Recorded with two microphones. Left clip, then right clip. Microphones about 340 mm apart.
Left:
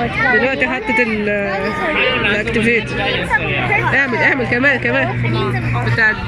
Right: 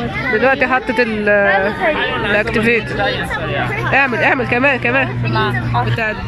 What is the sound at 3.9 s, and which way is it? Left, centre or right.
Speech, centre.